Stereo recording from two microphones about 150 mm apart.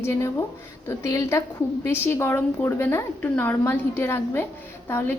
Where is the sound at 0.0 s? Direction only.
20° left (ahead or behind).